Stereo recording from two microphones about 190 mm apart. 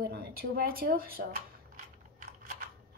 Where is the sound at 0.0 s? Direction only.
55° right (ahead or behind).